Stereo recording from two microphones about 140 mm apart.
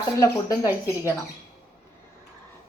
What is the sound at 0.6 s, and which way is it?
Speech, 15° right (ahead or behind).